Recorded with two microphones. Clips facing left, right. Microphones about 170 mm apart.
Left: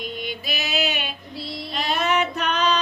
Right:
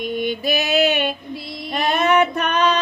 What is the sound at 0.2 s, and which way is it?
Female singing, 55° right (ahead or behind).